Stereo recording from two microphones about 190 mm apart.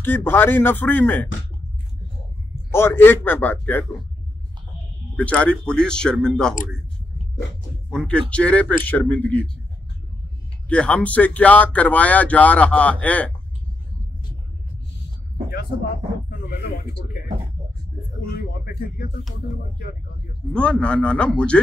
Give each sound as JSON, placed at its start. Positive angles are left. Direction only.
{"t": 0.0, "sound": "speech", "side_deg": 10}
{"t": 2.7, "sound": "speech", "side_deg": 10}
{"t": 5.1, "sound": "speech", "side_deg": 5}
{"t": 7.9, "sound": "speech", "side_deg": 5}
{"t": 10.7, "sound": "speech", "side_deg": 5}
{"t": 16.3, "sound": "speech", "side_deg": 50}
{"t": 18.3, "sound": "speech", "side_deg": 50}
{"t": 20.5, "sound": "speech", "side_deg": 5}